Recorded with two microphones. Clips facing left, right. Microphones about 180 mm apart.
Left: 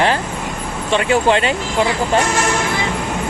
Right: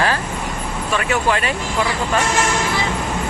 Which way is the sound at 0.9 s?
30° left (ahead or behind).